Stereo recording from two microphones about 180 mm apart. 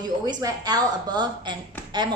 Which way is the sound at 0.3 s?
20° right (ahead or behind).